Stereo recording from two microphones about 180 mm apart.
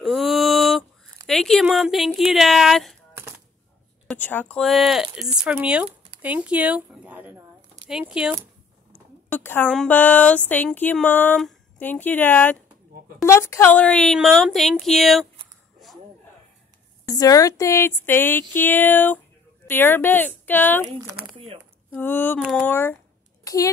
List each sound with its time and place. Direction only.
0.0 s a sound: centre (ahead or behind)
1.2 s speech: centre (ahead or behind)
4.1 s speech: 10° left (ahead or behind)
9.3 s speech: 10° left (ahead or behind)
15.8 s a sound: centre (ahead or behind)
17.0 s speech: 20° left (ahead or behind)
21.9 s speech: 10° left (ahead or behind)
22.7 s speech: 10° left (ahead or behind)
23.4 s a sound: 20° left (ahead or behind)